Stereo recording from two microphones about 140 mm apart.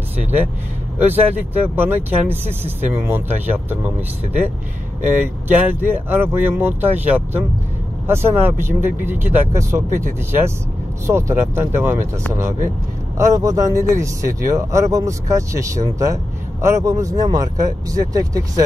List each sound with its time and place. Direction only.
1.0 s speech: 15° right (ahead or behind)
5.0 s speech: 15° right (ahead or behind)